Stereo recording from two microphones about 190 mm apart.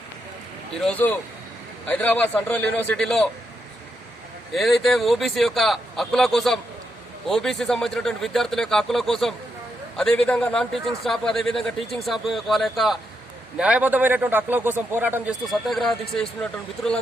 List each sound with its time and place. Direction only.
0.8 s a man's voice: 5° left (ahead or behind)
4.5 s a man's voice: centre (ahead or behind)